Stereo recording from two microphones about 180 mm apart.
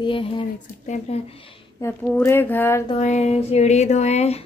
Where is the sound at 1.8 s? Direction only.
15° left (ahead or behind).